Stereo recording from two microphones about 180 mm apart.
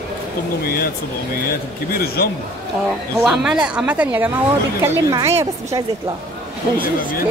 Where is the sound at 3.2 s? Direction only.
5° right (ahead or behind).